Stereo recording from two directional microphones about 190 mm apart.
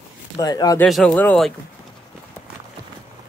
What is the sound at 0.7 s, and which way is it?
Speech, centre (ahead or behind).